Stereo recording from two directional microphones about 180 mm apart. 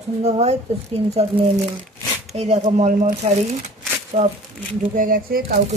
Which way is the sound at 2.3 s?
35° right (ahead or behind).